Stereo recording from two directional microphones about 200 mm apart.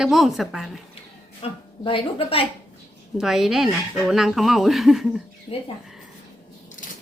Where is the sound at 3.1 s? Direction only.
Centre (ahead or behind).